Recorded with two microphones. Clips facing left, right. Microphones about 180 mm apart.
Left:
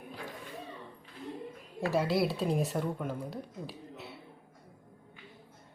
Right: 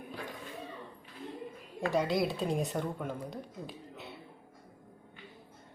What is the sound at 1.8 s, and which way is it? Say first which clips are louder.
Speech: left 1 dB; 5° left (ahead or behind).